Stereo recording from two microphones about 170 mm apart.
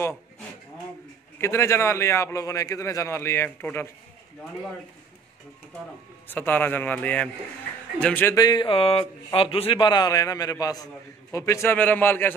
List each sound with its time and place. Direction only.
1.4 s a man's voice: 15° left (ahead or behind)
6.2 s a man's voice: 10° left (ahead or behind)
8.4 s a man's voice: 25° left (ahead or behind)